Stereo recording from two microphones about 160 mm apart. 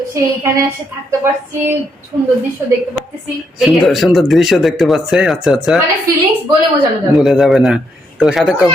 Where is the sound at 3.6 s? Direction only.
Centre (ahead or behind).